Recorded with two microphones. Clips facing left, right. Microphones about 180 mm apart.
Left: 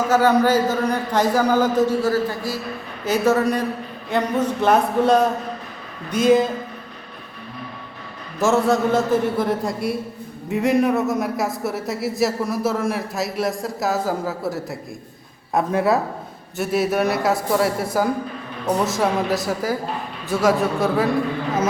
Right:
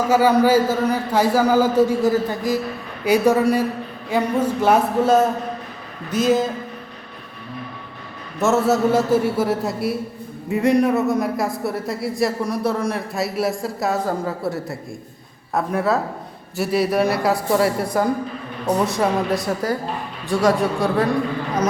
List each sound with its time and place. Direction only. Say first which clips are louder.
0.1 s speech: right 2 dB; 10° right (ahead or behind)
8.4 s speech: even; 5° right (ahead or behind)
15.5 s speech: left 2 dB; 15° left (ahead or behind)
16.6 s speech: right 1 dB; centre (ahead or behind)